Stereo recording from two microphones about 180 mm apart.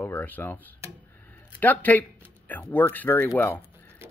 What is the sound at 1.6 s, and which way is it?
Speech, 10° left (ahead or behind).